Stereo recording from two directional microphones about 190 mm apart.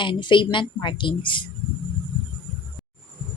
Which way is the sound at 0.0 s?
25° left (ahead or behind).